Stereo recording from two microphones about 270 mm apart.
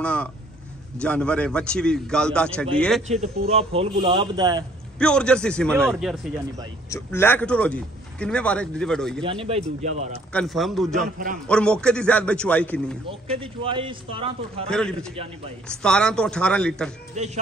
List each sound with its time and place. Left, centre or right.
0.0 s a man's voice: centre
3.1 s speech: right
4.9 s a man's voice: centre
9.2 s speech: centre
10.3 s a man's voice: centre
13.3 s speech: centre
14.7 s a man's voice: centre
17.1 s speech: right